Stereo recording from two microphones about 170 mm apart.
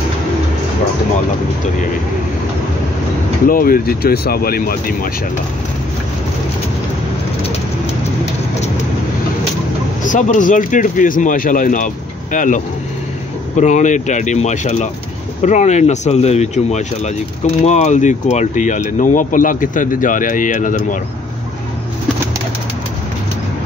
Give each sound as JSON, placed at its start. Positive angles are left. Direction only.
{"t": 3.4, "sound": "speech", "side_deg": 55}
{"t": 10.0, "sound": "speech", "side_deg": 50}